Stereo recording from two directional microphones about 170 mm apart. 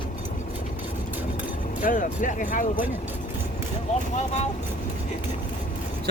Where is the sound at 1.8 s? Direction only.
50° left (ahead or behind).